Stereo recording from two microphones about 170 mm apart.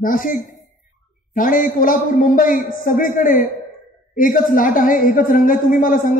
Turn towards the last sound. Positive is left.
turn(degrees=50)  # may be behind; listen again after turning